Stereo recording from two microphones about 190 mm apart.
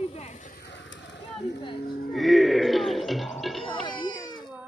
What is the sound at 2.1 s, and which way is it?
Music, centre (ahead or behind).